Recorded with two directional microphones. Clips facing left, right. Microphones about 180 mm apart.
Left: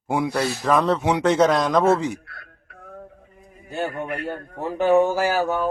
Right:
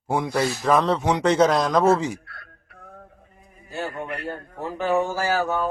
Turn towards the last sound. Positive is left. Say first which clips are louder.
# left 2 dB
turn(degrees=15)  # may be behind; listen again after turning